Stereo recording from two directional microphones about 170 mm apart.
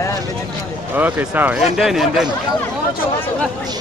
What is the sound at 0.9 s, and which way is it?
Speech, 10° right (ahead or behind).